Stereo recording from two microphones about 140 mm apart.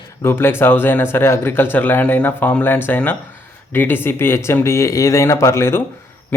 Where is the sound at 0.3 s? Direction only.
15° left (ahead or behind).